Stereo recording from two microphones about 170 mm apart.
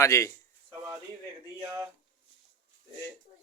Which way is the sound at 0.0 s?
15° left (ahead or behind).